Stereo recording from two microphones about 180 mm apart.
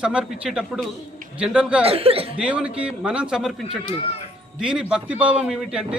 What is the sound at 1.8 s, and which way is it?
Speech, 35° right (ahead or behind).